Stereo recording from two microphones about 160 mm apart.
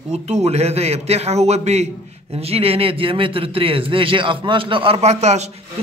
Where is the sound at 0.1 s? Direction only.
40° right (ahead or behind).